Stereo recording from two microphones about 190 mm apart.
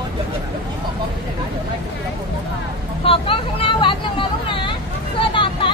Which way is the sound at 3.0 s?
30° left (ahead or behind).